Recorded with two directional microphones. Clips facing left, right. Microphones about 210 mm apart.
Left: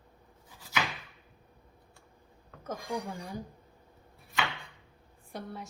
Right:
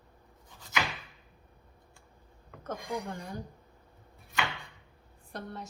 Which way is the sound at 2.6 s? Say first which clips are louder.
Even; centre (ahead or behind).